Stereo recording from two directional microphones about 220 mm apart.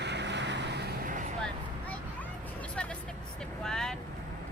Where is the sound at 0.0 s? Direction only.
50° right (ahead or behind).